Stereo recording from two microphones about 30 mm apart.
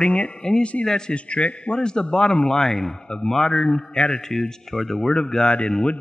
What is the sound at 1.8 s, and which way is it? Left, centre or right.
A man's voice, left.